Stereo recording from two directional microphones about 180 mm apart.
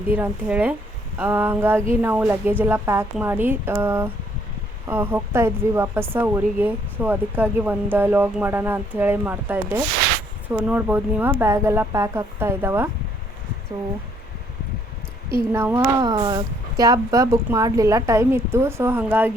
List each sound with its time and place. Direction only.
0.1 s speech: 10° right (ahead or behind)
15.5 s speech: 15° right (ahead or behind)